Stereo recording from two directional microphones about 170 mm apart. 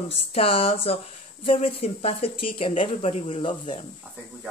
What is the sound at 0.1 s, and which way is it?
Speech, 35° left (ahead or behind).